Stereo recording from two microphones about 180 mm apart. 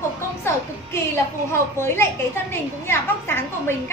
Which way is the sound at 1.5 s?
15° left (ahead or behind).